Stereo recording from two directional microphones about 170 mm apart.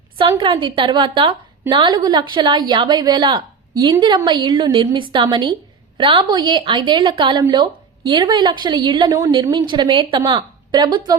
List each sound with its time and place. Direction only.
0.2 s a woman's voice: 30° right (ahead or behind)